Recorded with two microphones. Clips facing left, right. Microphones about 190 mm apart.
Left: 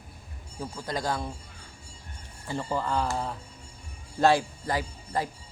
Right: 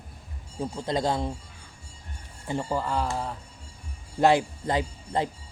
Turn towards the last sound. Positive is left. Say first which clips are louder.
# right 3 dB
turn(degrees=-20)  # may be behind; listen again after turning